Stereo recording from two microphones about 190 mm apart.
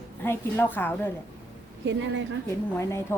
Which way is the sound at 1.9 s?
75° right (ahead or behind).